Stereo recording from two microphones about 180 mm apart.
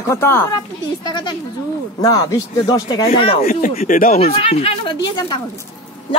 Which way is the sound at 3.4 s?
50° left (ahead or behind).